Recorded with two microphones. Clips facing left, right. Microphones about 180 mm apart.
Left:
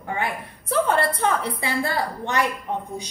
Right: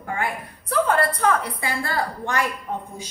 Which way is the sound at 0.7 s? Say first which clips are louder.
Even; 25° left (ahead or behind).